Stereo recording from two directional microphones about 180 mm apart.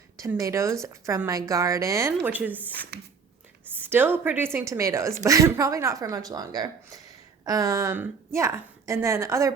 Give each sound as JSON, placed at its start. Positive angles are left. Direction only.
{"t": 0.2, "sound": "a woman's voice", "side_deg": -15}
{"t": 3.8, "sound": "a woman's voice", "side_deg": -10}